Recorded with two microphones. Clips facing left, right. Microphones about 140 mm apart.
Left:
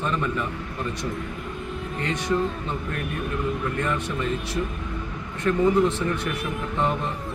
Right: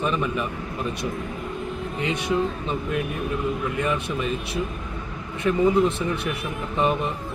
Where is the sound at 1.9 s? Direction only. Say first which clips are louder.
Right 1 dB; 15° right (ahead or behind).